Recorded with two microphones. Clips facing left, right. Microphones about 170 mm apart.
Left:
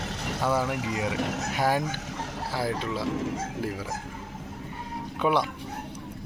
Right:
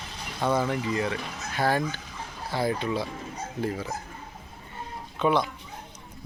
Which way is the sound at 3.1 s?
90° left.